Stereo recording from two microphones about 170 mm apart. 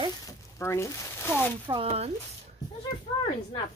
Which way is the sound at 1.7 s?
35° right (ahead or behind).